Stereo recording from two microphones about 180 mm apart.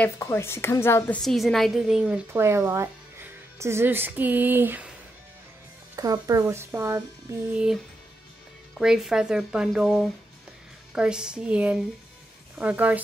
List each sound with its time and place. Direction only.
0.0 s a woman's voice: 15° left (ahead or behind)
1.2 s a woman's voice: centre (ahead or behind)
6.1 s a woman's voice: 20° right (ahead or behind)
7.5 s a woman's voice: 5° right (ahead or behind)